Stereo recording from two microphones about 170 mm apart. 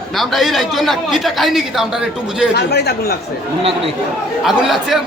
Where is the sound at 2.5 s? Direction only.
75° left (ahead or behind).